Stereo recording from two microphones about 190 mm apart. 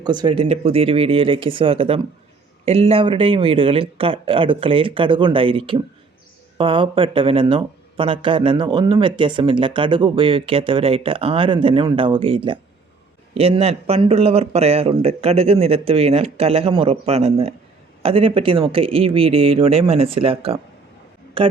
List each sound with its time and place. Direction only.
0.0 s speech: 20° right (ahead or behind)